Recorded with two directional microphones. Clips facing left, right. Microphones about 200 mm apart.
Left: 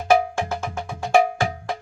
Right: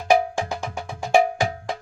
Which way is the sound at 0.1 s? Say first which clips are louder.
Even; 15° right (ahead or behind).